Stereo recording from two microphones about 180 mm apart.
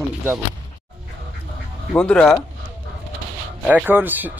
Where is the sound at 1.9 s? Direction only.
5° left (ahead or behind).